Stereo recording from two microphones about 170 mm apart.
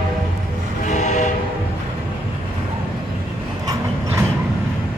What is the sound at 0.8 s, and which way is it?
Train, 45° left (ahead or behind).